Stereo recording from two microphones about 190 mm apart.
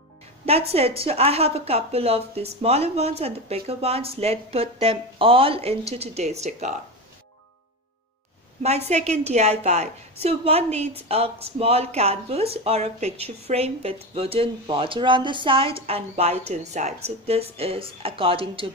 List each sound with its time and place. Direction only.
0.5 s speech: 30° right (ahead or behind)
8.6 s speech: 35° right (ahead or behind)